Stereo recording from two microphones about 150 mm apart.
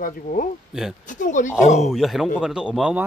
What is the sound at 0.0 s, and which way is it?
Speech, 65° left (ahead or behind).